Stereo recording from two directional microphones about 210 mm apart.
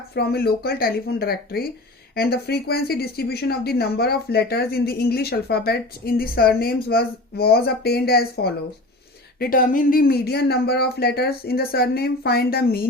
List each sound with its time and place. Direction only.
0.1 s speech: 50° left (ahead or behind)